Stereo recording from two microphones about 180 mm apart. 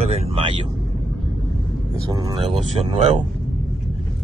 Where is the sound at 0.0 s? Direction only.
30° right (ahead or behind).